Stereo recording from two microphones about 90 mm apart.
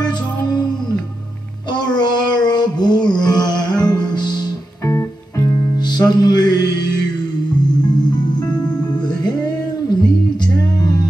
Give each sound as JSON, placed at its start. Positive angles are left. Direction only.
{"t": 1.7, "sound": "a sound", "side_deg": 55}
{"t": 4.8, "sound": "music", "side_deg": 30}
{"t": 5.9, "sound": "music", "side_deg": 50}
{"t": 9.0, "sound": "music", "side_deg": 50}